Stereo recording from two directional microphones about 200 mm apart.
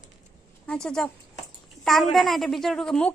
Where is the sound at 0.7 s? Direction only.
5° left (ahead or behind).